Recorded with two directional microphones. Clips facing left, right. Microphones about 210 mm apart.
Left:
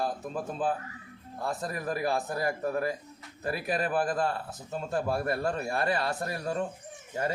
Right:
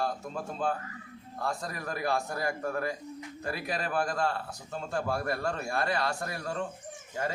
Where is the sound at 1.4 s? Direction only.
20° left (ahead or behind).